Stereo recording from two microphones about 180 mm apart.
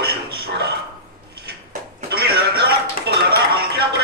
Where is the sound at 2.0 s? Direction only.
60° right (ahead or behind).